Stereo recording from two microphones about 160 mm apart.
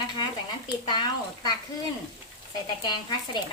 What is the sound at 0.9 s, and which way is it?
Speech, 30° left (ahead or behind).